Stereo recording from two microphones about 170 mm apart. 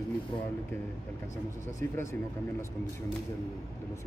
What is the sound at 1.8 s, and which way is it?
Speech, 15° left (ahead or behind).